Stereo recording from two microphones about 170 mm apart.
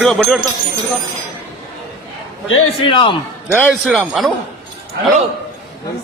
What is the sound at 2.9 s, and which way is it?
Speech, 30° left (ahead or behind).